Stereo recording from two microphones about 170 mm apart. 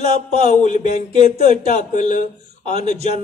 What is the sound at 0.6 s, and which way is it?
Speech, 45° left (ahead or behind).